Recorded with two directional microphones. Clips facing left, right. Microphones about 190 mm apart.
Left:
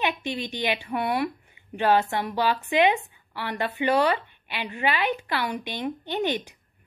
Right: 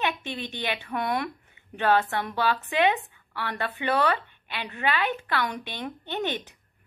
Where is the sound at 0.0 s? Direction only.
10° left (ahead or behind).